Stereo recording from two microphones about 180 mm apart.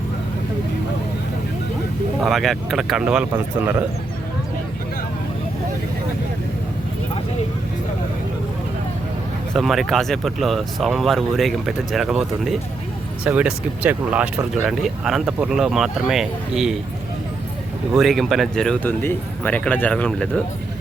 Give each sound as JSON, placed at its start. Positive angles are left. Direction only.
{"t": 2.2, "sound": "speech", "side_deg": 0}
{"t": 9.6, "sound": "speech", "side_deg": 0}
{"t": 17.9, "sound": "speech", "side_deg": 0}